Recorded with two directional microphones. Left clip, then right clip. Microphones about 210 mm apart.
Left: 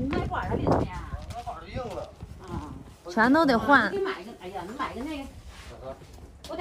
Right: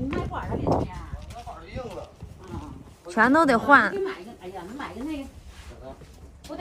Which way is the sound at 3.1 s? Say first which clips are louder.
Right 2 dB; 10° left (ahead or behind).